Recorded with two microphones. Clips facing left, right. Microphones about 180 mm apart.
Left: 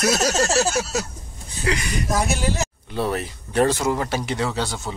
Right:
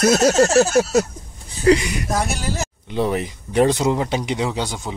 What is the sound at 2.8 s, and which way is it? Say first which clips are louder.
Speech: right 5 dB; 15° right (ahead or behind).